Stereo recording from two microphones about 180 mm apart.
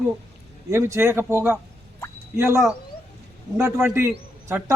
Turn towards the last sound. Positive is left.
turn(degrees=-10)  # may be behind; listen again after turning